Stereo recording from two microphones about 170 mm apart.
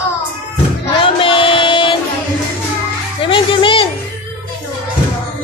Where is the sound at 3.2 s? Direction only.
30° left (ahead or behind).